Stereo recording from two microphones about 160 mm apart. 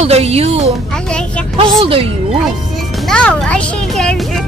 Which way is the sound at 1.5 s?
35° right (ahead or behind).